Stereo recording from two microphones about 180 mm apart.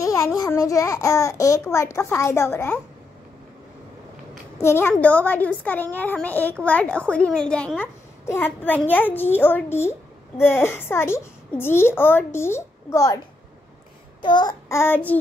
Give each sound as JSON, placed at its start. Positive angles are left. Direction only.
{"t": 0.0, "sound": "a sound", "side_deg": 20}
{"t": 0.4, "sound": "a woman's voice", "side_deg": 20}
{"t": 4.6, "sound": "a woman's voice", "side_deg": 15}
{"t": 14.2, "sound": "babbling", "side_deg": 25}